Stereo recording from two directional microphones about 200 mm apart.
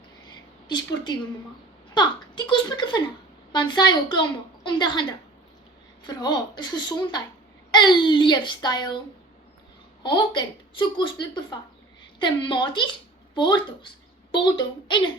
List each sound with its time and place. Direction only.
0.7 s a woman's voice: 20° left (ahead or behind)
6.1 s a woman's voice: 20° left (ahead or behind)
10.0 s a woman's voice: 25° left (ahead or behind)